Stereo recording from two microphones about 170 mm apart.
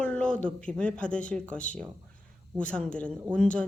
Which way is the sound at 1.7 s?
50° left (ahead or behind).